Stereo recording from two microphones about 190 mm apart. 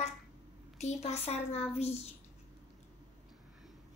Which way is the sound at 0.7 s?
35° left (ahead or behind).